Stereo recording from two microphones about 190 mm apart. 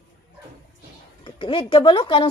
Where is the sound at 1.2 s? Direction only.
25° left (ahead or behind).